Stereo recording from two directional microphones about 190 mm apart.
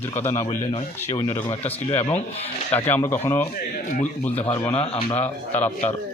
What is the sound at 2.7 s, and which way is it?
Speech, 10° left (ahead or behind).